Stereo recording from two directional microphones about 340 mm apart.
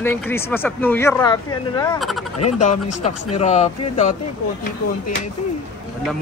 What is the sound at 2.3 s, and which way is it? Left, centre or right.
Speech, left.